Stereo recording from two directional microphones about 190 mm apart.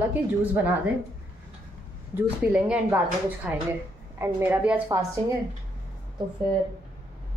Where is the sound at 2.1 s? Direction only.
5° right (ahead or behind).